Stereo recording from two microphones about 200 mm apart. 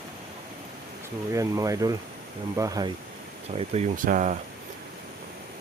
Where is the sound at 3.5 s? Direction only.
30° right (ahead or behind).